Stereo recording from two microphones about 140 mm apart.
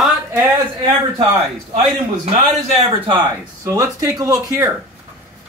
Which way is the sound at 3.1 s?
20° right (ahead or behind).